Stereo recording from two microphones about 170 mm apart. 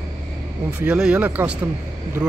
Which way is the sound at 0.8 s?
5° right (ahead or behind).